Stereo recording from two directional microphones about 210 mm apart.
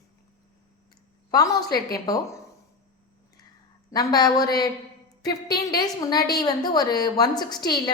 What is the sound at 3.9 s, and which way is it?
Speech, 20° left (ahead or behind).